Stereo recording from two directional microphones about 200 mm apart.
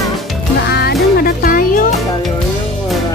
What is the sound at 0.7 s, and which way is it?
Music, 55° left (ahead or behind).